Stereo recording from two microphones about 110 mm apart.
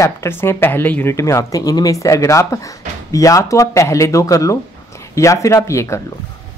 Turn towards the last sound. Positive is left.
turn(degrees=25)  # may be behind; listen again after turning